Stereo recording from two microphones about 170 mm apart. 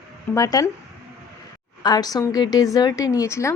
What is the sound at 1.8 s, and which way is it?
Speech, 25° left (ahead or behind).